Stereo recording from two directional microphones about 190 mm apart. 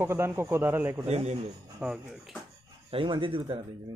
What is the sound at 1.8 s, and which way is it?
Speech, 5° right (ahead or behind).